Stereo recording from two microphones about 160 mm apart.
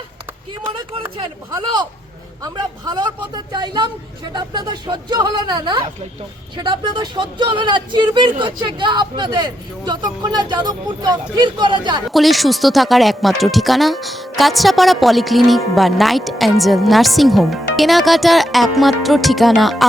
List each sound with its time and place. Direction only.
1.1 s speech: 30° right (ahead or behind)
12.0 s speech: centre (ahead or behind)